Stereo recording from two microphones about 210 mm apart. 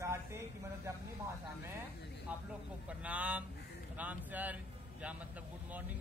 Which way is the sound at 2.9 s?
5° right (ahead or behind).